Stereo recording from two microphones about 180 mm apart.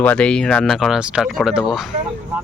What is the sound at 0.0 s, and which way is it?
Speech, 5° left (ahead or behind).